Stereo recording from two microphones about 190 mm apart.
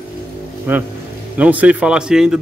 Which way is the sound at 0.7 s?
10° right (ahead or behind).